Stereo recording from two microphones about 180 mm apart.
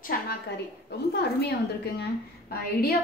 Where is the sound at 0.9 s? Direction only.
65° left (ahead or behind).